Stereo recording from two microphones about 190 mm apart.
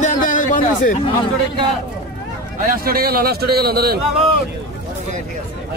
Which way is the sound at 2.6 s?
50° right (ahead or behind).